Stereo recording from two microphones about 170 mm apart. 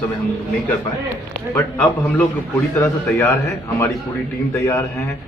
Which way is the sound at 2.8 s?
15° left (ahead or behind).